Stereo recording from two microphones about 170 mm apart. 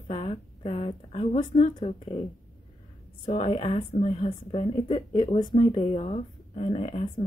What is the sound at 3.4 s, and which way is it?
Speech, 40° left (ahead or behind).